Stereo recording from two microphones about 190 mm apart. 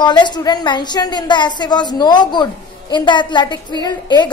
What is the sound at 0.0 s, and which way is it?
A woman's voice, 25° left (ahead or behind).